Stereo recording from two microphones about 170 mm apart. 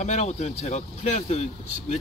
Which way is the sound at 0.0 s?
40° left (ahead or behind).